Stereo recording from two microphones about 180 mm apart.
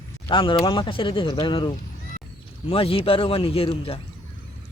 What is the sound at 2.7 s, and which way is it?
Speech, 30° left (ahead or behind).